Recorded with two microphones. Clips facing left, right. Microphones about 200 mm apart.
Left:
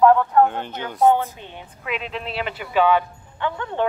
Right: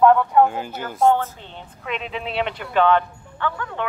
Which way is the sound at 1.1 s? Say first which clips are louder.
Left 1 dB; 15° left (ahead or behind).